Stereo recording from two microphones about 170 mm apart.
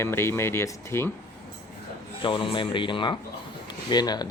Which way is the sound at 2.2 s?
30° left (ahead or behind).